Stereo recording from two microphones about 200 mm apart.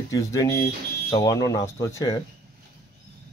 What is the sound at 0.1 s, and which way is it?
Speech, 15° left (ahead or behind).